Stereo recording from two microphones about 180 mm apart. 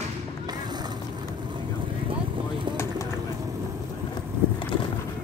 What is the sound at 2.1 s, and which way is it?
Vehicle, 25° right (ahead or behind).